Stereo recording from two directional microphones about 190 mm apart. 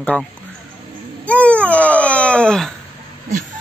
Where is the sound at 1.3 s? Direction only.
5° left (ahead or behind).